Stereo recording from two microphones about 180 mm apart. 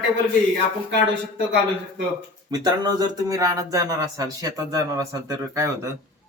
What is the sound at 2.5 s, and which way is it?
Speech, 20° right (ahead or behind).